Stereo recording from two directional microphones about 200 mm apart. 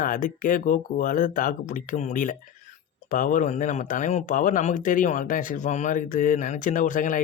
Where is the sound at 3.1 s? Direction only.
40° left (ahead or behind).